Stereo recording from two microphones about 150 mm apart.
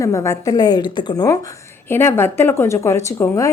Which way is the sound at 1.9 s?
15° left (ahead or behind).